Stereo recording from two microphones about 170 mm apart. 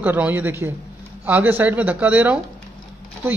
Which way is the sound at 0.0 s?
10° right (ahead or behind).